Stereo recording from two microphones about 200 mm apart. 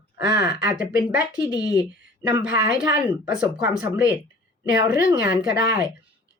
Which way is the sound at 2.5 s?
50° left (ahead or behind).